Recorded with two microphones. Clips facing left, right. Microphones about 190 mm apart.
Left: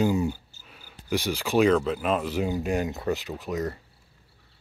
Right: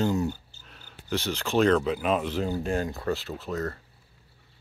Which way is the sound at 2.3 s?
15° left (ahead or behind).